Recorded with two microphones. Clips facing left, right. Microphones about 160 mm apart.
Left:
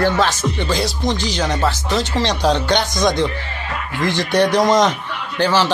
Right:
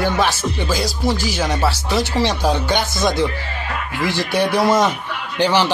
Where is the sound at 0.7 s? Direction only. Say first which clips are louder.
Right 2 dB; centre (ahead or behind).